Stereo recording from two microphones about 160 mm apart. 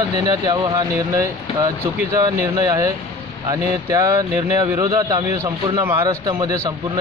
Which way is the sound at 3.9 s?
20° right (ahead or behind).